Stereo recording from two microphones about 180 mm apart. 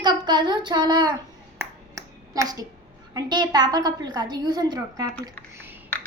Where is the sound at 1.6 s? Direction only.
15° right (ahead or behind).